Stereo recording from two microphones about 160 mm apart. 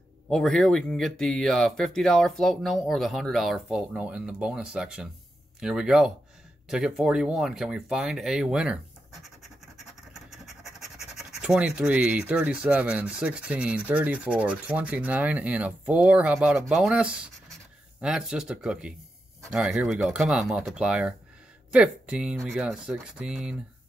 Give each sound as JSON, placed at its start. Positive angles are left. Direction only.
{"t": 0.3, "sound": "speech", "side_deg": 5}